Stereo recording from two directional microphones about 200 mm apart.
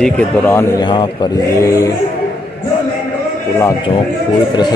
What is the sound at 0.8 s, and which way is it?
Speech, 25° left (ahead or behind).